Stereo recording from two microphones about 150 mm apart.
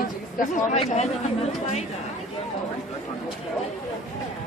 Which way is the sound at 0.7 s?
45° left (ahead or behind).